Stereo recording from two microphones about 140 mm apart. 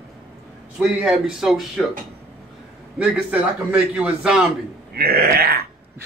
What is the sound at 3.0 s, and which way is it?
A man's voice, 10° right (ahead or behind).